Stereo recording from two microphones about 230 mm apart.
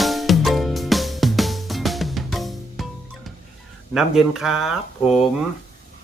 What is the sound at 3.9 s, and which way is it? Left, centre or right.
Speech, centre.